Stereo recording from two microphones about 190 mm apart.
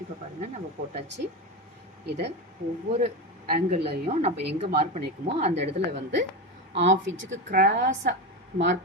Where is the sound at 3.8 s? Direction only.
30° right (ahead or behind).